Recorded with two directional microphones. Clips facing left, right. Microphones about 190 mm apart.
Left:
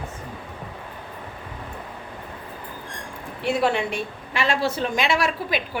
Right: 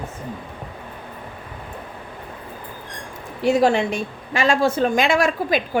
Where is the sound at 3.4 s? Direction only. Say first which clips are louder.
Right 5 dB; 40° right (ahead or behind).